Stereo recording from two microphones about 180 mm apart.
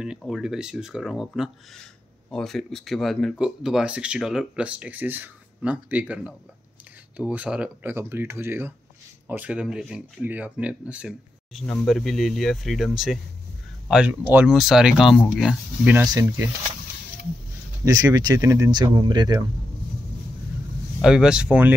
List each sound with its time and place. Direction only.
0.0 s speech: 5° right (ahead or behind)
16.1 s speech: 20° right (ahead or behind)
17.8 s speech: 20° right (ahead or behind)
21.0 s speech: 5° right (ahead or behind)